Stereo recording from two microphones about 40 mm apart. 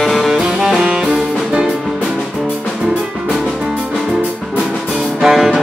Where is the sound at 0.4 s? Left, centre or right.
Centre.